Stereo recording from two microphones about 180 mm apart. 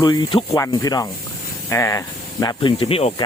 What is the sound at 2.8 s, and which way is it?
Speech, 35° left (ahead or behind).